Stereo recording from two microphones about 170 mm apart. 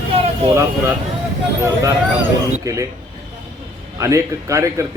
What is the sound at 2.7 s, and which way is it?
Speech, 20° right (ahead or behind).